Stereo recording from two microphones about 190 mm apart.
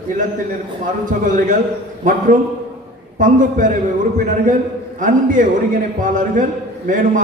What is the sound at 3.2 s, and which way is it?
Speech, 45° right (ahead or behind).